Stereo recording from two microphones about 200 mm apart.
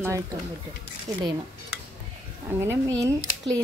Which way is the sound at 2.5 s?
10° right (ahead or behind).